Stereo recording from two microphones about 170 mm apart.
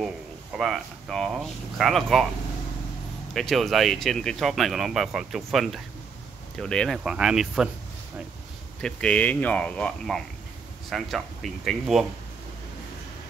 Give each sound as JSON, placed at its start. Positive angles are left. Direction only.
{"t": 0.6, "sound": "speech", "side_deg": 0}
{"t": 3.3, "sound": "speech", "side_deg": 0}
{"t": 8.8, "sound": "speech", "side_deg": 5}